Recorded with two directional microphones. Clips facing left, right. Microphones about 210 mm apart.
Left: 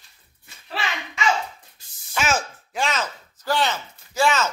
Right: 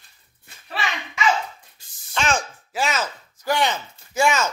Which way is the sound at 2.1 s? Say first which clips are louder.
Even; 5° left (ahead or behind).